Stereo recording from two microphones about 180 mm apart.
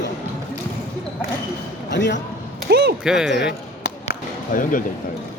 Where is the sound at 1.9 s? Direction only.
75° left (ahead or behind).